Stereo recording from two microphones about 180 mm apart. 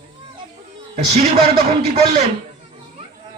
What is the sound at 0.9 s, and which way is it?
Speech, 35° right (ahead or behind).